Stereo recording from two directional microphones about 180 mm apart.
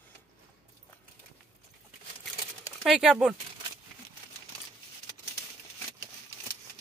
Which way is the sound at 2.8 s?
Centre (ahead or behind).